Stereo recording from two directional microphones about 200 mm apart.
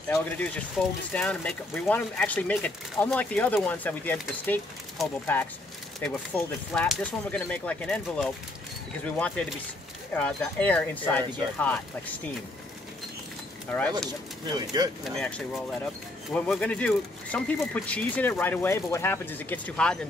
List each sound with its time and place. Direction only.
0.1 s speech: 5° left (ahead or behind)
13.7 s speech: 5° left (ahead or behind)
14.5 s speech: 20° right (ahead or behind)
15.1 s speech: 5° left (ahead or behind)